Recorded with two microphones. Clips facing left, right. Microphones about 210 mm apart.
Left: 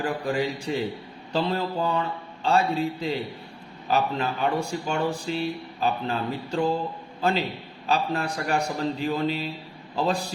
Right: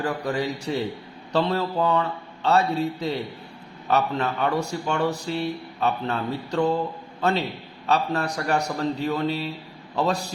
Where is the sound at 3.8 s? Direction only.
30° left (ahead or behind).